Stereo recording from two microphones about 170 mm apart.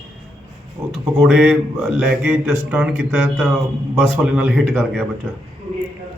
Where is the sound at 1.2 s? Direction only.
5° right (ahead or behind).